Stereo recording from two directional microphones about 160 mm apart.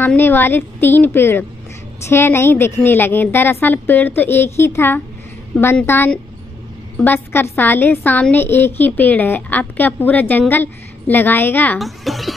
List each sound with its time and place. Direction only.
0.0 s a woman's voice: 10° left (ahead or behind)
11.8 s a child's voice: centre (ahead or behind)